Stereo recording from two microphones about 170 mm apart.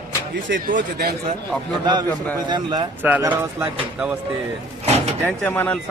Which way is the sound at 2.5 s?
25° right (ahead or behind).